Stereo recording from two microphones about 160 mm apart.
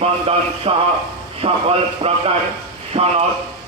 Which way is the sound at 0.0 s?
40° right (ahead or behind).